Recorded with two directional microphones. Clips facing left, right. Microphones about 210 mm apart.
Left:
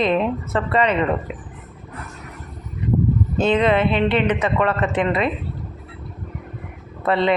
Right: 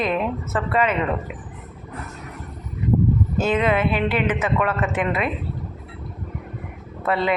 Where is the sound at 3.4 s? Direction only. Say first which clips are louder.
Left 4 dB; 5° right (ahead or behind).